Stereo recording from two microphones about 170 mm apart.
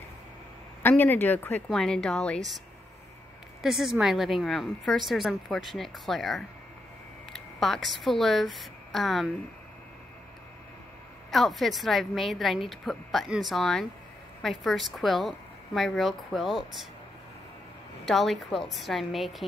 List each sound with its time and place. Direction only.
0.8 s speech: 10° left (ahead or behind)
3.6 s a woman's voice: centre (ahead or behind)
7.3 s a sound: centre (ahead or behind)
8.0 s a woman's voice: centre (ahead or behind)
11.3 s a woman's voice: centre (ahead or behind)
18.0 s a woman's voice: centre (ahead or behind)